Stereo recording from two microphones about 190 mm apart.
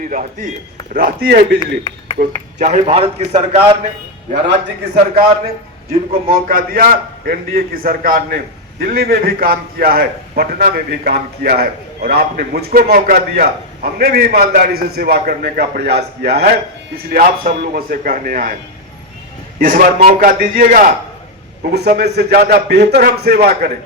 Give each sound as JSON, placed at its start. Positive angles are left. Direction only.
{"t": 0.9, "sound": "a man's voice", "side_deg": -55}
{"t": 2.1, "sound": "a man's voice", "side_deg": -40}
{"t": 4.4, "sound": "a man's voice", "side_deg": -60}
{"t": 6.2, "sound": "a man's voice", "side_deg": -50}
{"t": 19.5, "sound": "a man's voice", "side_deg": -45}
{"t": 21.7, "sound": "a man's voice", "side_deg": -60}